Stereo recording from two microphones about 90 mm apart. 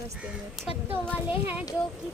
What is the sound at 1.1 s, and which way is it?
Speech, 20° right (ahead or behind).